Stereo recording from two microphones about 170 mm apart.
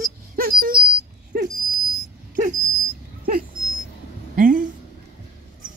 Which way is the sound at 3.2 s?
55° right (ahead or behind).